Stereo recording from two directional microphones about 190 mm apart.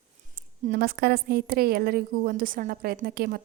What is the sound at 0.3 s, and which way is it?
A woman's voice, 55° right (ahead or behind).